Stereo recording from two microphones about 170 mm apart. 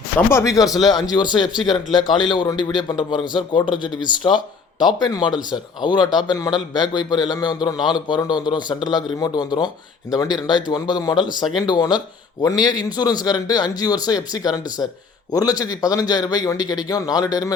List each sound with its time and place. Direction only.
0.3 s speech: 15° left (ahead or behind)